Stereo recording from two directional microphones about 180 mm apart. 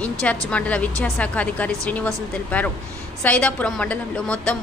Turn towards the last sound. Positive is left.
turn(degrees=5)  # may be behind; listen again after turning